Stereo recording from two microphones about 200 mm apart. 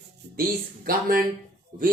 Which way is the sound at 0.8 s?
45° right (ahead or behind).